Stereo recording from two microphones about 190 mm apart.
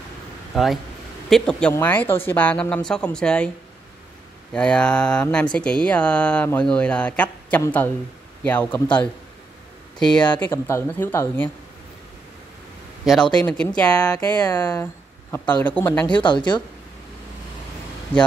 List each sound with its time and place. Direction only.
0.5 s speech: centre (ahead or behind)
4.5 s speech: 5° left (ahead or behind)
13.0 s speech: centre (ahead or behind)
14.4 s speech: 20° left (ahead or behind)
16.1 s speech: 25° left (ahead or behind)